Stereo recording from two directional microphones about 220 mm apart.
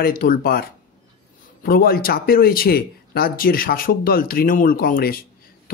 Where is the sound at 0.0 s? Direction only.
40° left (ahead or behind).